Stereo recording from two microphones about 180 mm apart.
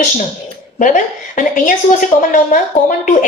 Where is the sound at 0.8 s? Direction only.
45° left (ahead or behind).